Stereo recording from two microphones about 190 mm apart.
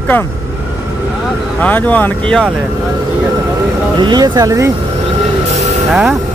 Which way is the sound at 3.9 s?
25° right (ahead or behind).